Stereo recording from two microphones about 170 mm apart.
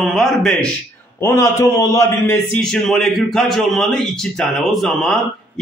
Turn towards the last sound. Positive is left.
turn(degrees=0)  # may be behind; listen again after turning